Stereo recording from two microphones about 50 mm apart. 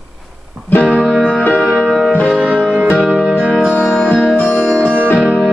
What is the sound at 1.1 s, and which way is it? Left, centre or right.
Music, centre.